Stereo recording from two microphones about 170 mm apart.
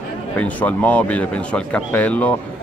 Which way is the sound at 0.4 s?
10° left (ahead or behind).